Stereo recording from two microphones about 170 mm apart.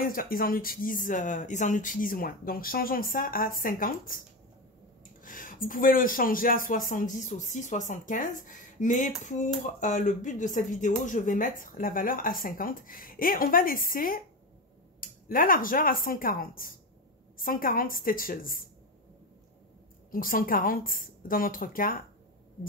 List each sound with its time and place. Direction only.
0.0 s speech: 55° left (ahead or behind)
5.2 s speech: 50° left (ahead or behind)
20.1 s speech: 55° left (ahead or behind)